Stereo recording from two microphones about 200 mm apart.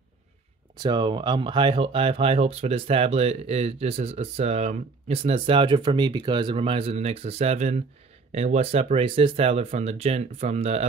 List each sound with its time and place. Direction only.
0.7 s speech: 20° right (ahead or behind)